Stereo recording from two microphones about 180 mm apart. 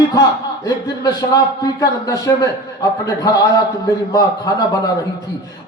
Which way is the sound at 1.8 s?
20° left (ahead or behind).